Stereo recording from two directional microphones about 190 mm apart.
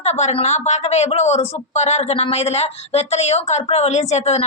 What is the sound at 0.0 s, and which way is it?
A woman's voice, 35° left (ahead or behind).